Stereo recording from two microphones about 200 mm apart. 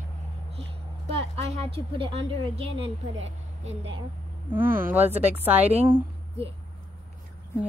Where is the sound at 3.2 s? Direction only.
70° right (ahead or behind).